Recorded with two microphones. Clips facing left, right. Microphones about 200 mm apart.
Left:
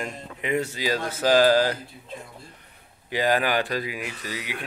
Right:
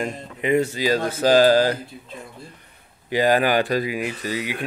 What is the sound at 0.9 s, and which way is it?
Speech, 35° right (ahead or behind).